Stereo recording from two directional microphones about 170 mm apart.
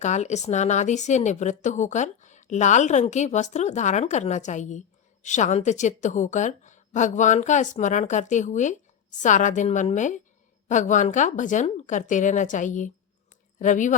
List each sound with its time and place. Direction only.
0.0 s a woman's voice: 45° left (ahead or behind)